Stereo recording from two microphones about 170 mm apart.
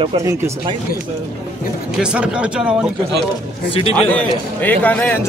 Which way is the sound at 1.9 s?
5° right (ahead or behind).